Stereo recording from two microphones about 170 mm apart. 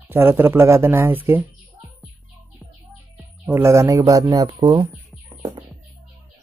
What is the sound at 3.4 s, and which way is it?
Speech, 15° right (ahead or behind).